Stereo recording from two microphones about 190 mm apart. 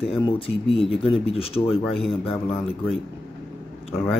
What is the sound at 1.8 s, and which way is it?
Speech, centre (ahead or behind).